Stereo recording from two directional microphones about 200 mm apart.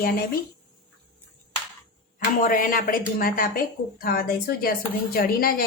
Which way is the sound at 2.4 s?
40° left (ahead or behind).